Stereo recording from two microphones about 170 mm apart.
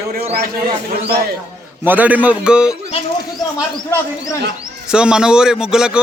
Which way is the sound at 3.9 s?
20° left (ahead or behind).